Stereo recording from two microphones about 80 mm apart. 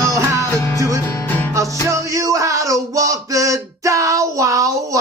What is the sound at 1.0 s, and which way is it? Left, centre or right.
Music, left.